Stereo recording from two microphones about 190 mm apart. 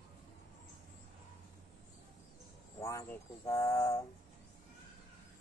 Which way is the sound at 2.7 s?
15° left (ahead or behind).